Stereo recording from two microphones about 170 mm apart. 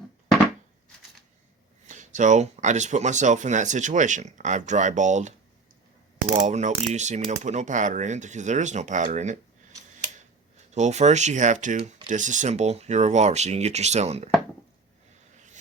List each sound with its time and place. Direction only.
1.9 s speech: 45° right (ahead or behind)
6.4 s speech: 45° right (ahead or behind)
10.8 s speech: 40° right (ahead or behind)